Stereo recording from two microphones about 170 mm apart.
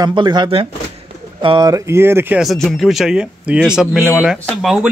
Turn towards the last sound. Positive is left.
turn(degrees=0)  # may be behind; listen again after turning